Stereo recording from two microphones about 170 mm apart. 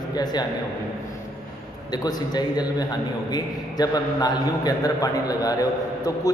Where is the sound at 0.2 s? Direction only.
25° left (ahead or behind).